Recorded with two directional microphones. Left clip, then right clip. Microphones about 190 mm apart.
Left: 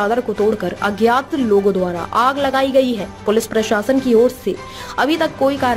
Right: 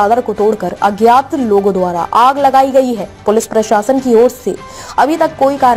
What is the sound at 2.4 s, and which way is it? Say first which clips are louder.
A woman's voice: right 6 dB; centre (ahead or behind).